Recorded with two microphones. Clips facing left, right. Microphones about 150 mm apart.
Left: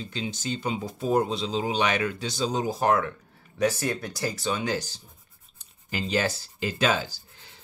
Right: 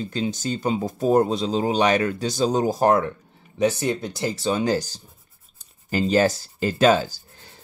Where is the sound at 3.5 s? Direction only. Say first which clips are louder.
Right 4 dB; 20° right (ahead or behind).